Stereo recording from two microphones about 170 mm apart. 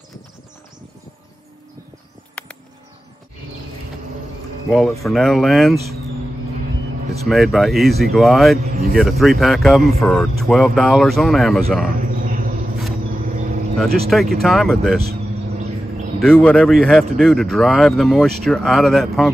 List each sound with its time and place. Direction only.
4.6 s speech: centre (ahead or behind)
7.2 s speech: centre (ahead or behind)
8.6 s speech: 60° right (ahead or behind)
8.9 s speech: centre (ahead or behind)
12.2 s a sound: 50° right (ahead or behind)
13.3 s vehicle: 50° right (ahead or behind)
13.7 s speech: centre (ahead or behind)
16.2 s speech: centre (ahead or behind)